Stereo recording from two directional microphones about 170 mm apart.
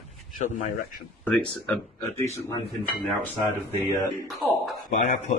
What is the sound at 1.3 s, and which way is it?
Speech, 10° left (ahead or behind).